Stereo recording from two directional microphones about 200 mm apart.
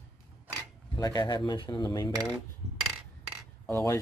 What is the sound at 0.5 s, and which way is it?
Speech, 20° left (ahead or behind).